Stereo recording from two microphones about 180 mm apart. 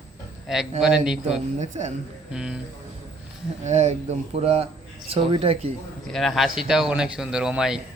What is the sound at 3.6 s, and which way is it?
Speech, 40° right (ahead or behind).